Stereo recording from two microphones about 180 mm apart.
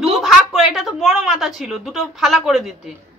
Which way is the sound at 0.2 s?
Centre (ahead or behind).